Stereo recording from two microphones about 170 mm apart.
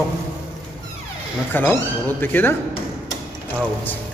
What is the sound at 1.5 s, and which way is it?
A man's voice, 10° left (ahead or behind).